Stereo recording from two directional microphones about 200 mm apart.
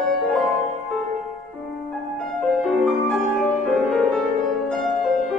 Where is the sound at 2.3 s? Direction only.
Centre (ahead or behind).